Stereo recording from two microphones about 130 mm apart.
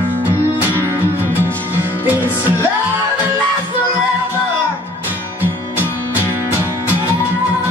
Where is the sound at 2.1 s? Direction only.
15° right (ahead or behind).